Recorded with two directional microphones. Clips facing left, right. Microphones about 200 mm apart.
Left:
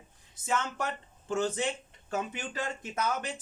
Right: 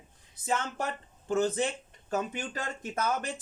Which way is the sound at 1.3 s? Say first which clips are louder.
Right 2 dB; 35° right (ahead or behind).